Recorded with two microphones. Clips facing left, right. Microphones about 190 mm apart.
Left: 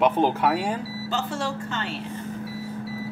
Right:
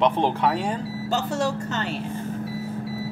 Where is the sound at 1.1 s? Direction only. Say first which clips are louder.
Right 4 dB; 40° right (ahead or behind).